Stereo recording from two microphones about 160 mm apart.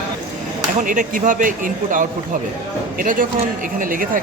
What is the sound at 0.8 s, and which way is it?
Speech, 55° right (ahead or behind).